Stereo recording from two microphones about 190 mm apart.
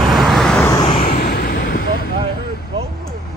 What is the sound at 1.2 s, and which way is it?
Vehicle, 55° left (ahead or behind).